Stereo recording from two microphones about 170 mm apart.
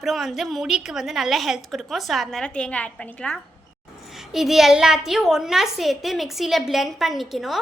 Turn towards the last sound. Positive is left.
turn(degrees=0)  # may be behind; listen again after turning